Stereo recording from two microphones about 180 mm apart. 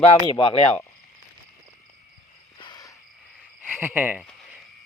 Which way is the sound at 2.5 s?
25° left (ahead or behind).